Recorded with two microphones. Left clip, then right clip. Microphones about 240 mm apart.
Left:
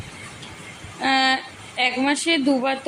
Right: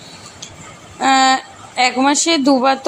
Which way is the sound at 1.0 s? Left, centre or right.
Right.